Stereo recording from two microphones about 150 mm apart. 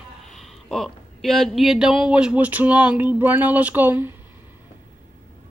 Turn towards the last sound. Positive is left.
turn(degrees=-15)  # may be behind; listen again after turning